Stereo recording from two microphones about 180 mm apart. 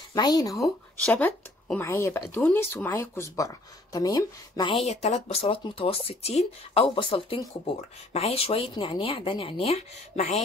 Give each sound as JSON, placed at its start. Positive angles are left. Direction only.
{"t": 0.1, "sound": "speech", "side_deg": 20}
{"t": 0.6, "sound": "speech", "side_deg": 5}